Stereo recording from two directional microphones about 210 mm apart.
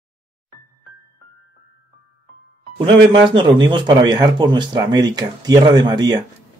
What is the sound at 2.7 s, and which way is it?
Speech, 25° right (ahead or behind).